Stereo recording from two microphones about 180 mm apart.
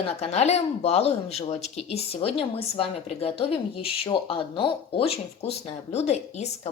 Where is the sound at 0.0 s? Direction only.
35° left (ahead or behind).